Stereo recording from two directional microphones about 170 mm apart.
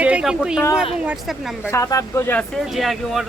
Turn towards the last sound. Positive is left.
turn(degrees=0)  # may be behind; listen again after turning